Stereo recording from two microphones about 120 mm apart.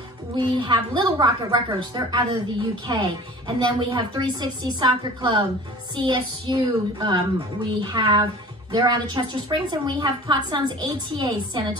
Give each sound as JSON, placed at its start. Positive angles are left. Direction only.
{"t": 0.4, "sound": "a woman's voice", "side_deg": -40}